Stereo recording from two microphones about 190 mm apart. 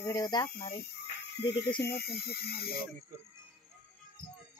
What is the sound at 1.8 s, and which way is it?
Speech, 55° left (ahead or behind).